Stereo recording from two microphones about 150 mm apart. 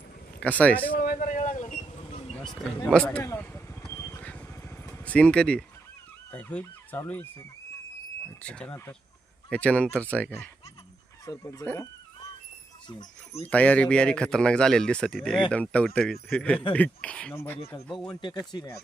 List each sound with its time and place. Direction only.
0.3 s speech: 10° left (ahead or behind)
0.9 s vehicle: 75° left (ahead or behind); by 2.3 s 40° left (ahead or behind)
2.8 s speech: 10° left (ahead or behind)
3.9 s vehicle: 15° left (ahead or behind)
5.0 s speech: 10° left (ahead or behind)
11.3 s speech: 25° left (ahead or behind)
11.6 s speech: 10° left (ahead or behind)
13.5 s speech: 10° left (ahead or behind)
18.1 s speech: 30° left (ahead or behind)